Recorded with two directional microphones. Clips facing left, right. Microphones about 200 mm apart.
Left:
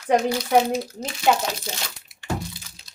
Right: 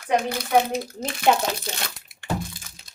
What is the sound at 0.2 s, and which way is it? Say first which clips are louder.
Speech: left 4 dB; 55° right (ahead or behind).